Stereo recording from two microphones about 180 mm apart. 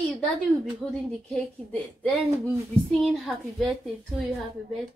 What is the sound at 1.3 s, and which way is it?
A woman's voice, 5° left (ahead or behind).